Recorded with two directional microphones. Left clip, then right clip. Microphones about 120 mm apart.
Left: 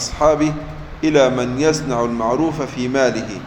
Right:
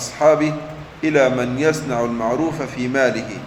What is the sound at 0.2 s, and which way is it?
A man's voice, 15° left (ahead or behind).